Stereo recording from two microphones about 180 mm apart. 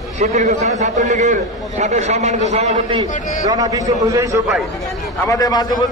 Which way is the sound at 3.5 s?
20° right (ahead or behind).